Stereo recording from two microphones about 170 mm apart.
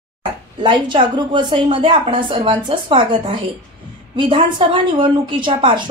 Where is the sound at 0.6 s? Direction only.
30° right (ahead or behind).